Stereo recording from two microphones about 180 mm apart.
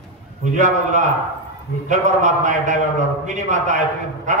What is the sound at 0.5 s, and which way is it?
A man's voice, 40° right (ahead or behind).